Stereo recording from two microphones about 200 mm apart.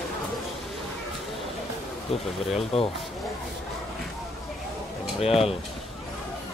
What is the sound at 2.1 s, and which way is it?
Speech, 30° left (ahead or behind).